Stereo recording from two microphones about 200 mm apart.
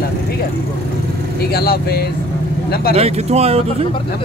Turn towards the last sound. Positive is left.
turn(degrees=-30)  # may be behind; listen again after turning